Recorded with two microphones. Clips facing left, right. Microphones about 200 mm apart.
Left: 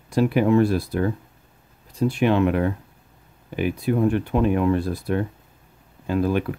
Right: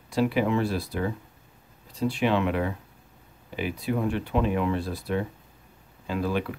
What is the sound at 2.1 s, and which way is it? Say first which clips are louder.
Speech: left 5 dB; 50° left (ahead or behind).